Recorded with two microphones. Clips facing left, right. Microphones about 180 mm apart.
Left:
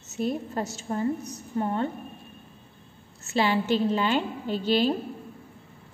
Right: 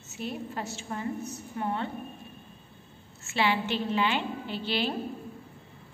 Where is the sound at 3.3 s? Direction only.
40° left (ahead or behind).